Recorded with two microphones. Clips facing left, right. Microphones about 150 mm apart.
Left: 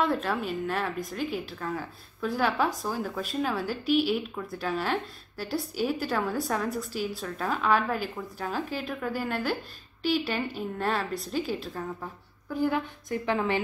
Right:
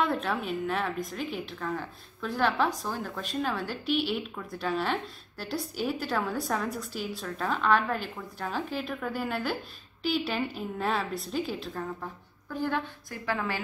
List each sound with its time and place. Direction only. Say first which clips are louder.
0.0 s a woman's voice: left 1 dB; centre (ahead or behind)
13.2 s a woman's voice: left 3 dB; 25° left (ahead or behind)